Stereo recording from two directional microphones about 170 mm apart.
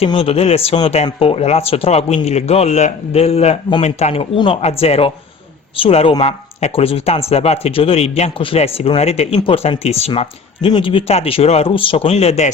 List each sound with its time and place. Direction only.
0.0 s speech: 30° left (ahead or behind)